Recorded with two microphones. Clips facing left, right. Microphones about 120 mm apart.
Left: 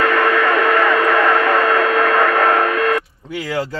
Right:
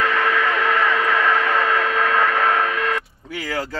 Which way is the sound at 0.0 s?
55° left (ahead or behind).